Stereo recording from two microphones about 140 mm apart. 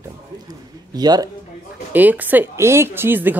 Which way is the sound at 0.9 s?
30° right (ahead or behind).